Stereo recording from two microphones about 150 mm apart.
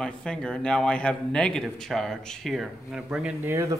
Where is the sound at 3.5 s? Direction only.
20° right (ahead or behind).